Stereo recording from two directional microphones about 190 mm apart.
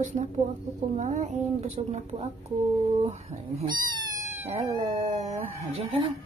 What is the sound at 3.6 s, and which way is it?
Cat, 25° right (ahead or behind).